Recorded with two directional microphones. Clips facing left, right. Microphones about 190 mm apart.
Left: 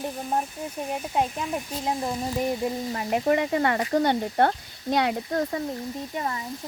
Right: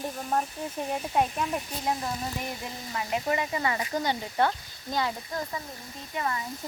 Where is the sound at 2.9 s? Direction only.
45° left (ahead or behind); by 5.6 s 60° left (ahead or behind).